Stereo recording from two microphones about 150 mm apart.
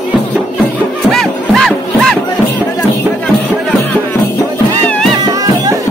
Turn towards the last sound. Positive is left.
turn(degrees=-25)  # may be behind; listen again after turning